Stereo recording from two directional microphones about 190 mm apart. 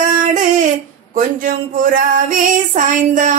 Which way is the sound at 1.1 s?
45° right (ahead or behind).